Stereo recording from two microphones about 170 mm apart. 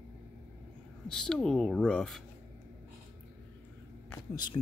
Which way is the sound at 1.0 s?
5° left (ahead or behind).